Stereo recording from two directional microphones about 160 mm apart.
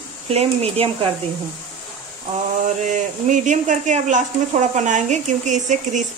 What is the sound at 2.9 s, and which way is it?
Speech, 50° right (ahead or behind).